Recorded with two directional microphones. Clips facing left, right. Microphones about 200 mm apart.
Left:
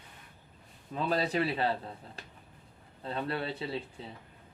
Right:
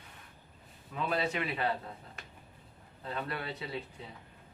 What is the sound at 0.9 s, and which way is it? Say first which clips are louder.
A man's voice: left 3 dB; 35° left (ahead or behind).